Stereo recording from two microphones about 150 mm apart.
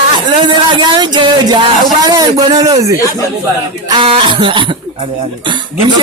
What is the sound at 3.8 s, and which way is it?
Speech, 30° right (ahead or behind).